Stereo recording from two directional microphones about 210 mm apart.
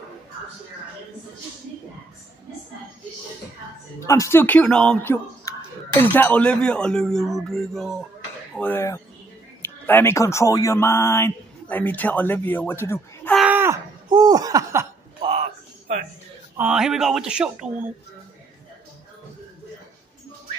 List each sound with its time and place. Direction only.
4.0 s speech: 15° left (ahead or behind)
13.3 s a sound: 5° right (ahead or behind)
14.0 s speech: 20° right (ahead or behind)
16.5 s speech: 5° right (ahead or behind)